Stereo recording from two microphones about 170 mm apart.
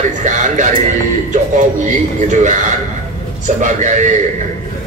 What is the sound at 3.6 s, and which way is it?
Speech, 45° right (ahead or behind).